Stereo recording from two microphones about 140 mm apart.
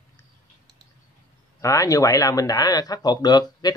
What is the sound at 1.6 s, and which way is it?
Speech, 20° left (ahead or behind).